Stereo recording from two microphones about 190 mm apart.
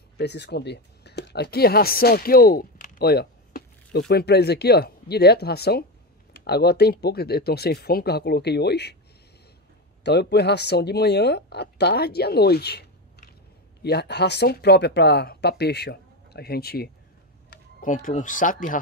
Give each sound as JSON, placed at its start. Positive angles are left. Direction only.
{"t": 0.2, "sound": "speech", "side_deg": 60}
{"t": 10.0, "sound": "speech", "side_deg": 60}
{"t": 13.8, "sound": "speech", "side_deg": 60}
{"t": 17.7, "sound": "speech", "side_deg": 45}